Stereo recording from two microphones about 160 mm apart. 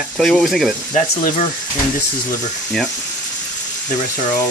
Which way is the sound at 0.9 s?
55° left (ahead or behind).